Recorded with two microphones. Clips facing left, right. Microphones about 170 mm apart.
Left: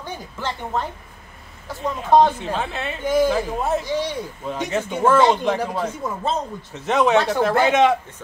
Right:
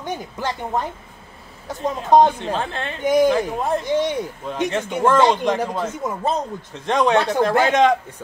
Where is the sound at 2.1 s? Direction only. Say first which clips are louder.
Right 1 dB; 15° right (ahead or behind).